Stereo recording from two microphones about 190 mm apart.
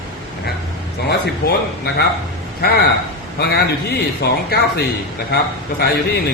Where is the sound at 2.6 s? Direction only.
55° left (ahead or behind).